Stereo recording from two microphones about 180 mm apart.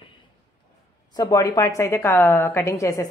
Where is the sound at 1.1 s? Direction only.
20° left (ahead or behind).